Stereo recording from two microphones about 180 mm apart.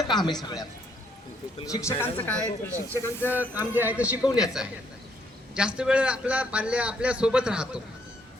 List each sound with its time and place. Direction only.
0.0 s speech: 25° left (ahead or behind)
3.5 s a man's voice: 10° right (ahead or behind)